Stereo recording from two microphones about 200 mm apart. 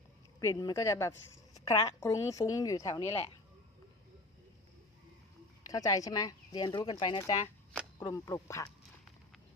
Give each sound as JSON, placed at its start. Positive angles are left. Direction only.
{"t": 0.3, "sound": "a woman's voice", "side_deg": 20}
{"t": 5.7, "sound": "speech", "side_deg": 15}